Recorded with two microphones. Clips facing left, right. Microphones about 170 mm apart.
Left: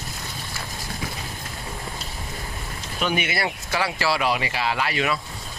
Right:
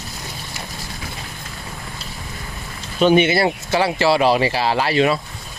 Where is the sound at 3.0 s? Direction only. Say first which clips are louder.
Right 11 dB; 25° right (ahead or behind).